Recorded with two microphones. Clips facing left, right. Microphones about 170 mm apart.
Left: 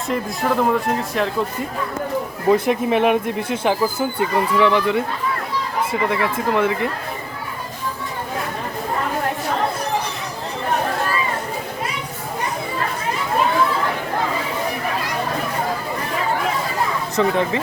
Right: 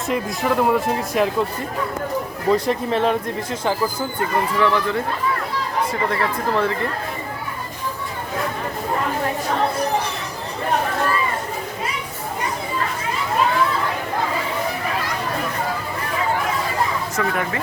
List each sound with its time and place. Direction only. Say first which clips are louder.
0.1 s speech: even; 5° right (ahead or behind)
2.5 s speech: left 3 dB; 15° left (ahead or behind)
6.1 s speech: left 1 dB; 10° left (ahead or behind)
17.2 s speech: left 6 dB; 20° left (ahead or behind)